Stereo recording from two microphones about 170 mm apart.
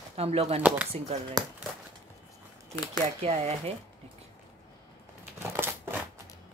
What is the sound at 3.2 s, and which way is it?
Speech, 35° right (ahead or behind).